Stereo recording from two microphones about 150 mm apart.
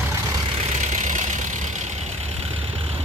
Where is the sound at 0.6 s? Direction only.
55° right (ahead or behind).